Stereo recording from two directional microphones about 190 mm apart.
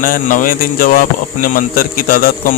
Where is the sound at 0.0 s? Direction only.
45° left (ahead or behind).